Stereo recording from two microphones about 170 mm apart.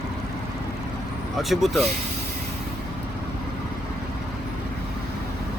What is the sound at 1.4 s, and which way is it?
Speech, centre (ahead or behind).